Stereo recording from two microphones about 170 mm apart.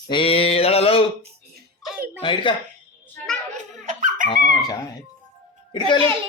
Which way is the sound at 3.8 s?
45° right (ahead or behind).